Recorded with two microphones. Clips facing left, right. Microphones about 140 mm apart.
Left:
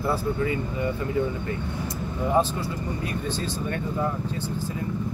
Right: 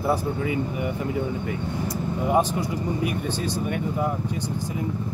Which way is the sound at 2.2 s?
15° right (ahead or behind).